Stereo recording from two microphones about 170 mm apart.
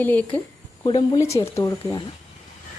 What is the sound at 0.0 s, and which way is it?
A woman's voice, 10° left (ahead or behind).